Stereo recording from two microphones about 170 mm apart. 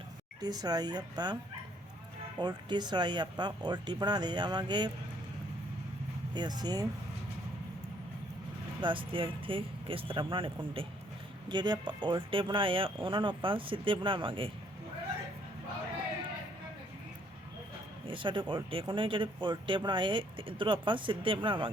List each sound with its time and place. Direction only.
0.4 s speech: 25° right (ahead or behind)
2.4 s speech: 25° right (ahead or behind)
6.3 s speech: 25° right (ahead or behind)
8.8 s speech: 30° right (ahead or behind)
18.0 s speech: 30° right (ahead or behind)